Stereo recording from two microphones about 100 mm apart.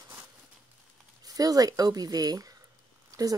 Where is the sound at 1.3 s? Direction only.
40° right (ahead or behind).